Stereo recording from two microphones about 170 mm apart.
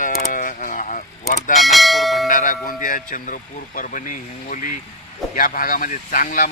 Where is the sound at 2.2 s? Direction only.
50° left (ahead or behind).